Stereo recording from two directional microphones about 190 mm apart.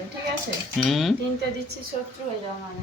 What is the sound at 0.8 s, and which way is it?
Speech, centre (ahead or behind).